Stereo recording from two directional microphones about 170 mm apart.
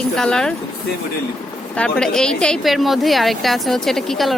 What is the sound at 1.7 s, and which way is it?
A woman's voice, 5° left (ahead or behind).